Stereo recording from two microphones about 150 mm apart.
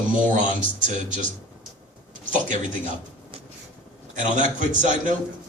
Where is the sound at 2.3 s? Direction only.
55° right (ahead or behind).